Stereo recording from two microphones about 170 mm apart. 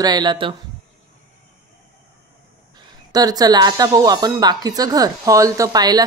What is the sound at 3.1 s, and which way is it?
Speech, 25° right (ahead or behind).